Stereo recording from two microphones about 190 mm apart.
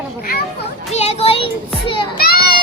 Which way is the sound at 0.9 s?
35° left (ahead or behind).